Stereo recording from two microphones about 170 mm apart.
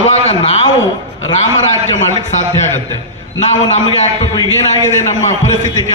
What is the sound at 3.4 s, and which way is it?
Speech, 40° left (ahead or behind).